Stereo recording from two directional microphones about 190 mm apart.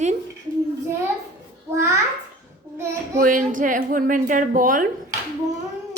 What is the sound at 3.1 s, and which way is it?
A woman's voice, 45° right (ahead or behind).